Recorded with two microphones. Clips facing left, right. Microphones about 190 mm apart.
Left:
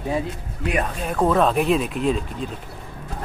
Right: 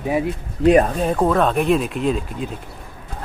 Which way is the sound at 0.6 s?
35° right (ahead or behind).